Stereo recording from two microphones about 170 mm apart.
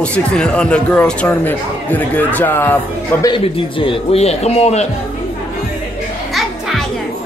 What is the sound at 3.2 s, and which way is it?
A man's voice, 30° left (ahead or behind).